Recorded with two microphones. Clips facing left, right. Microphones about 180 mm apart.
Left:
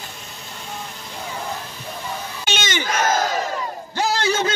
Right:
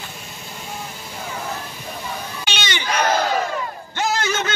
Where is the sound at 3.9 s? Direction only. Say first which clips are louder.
Left 2 dB; 35° left (ahead or behind).